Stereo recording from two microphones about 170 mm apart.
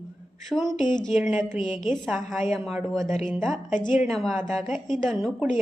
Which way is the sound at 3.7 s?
50° left (ahead or behind).